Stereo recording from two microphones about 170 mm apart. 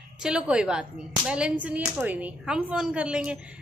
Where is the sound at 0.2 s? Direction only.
5° right (ahead or behind).